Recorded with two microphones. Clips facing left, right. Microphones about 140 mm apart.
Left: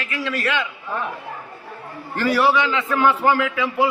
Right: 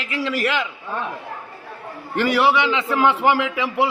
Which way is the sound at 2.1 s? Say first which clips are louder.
Even; 20° right (ahead or behind).